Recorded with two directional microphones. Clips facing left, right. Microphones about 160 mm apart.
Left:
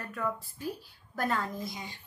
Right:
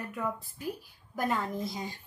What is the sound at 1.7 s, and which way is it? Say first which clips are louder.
Speech: right 4 dB; 35° right (ahead or behind).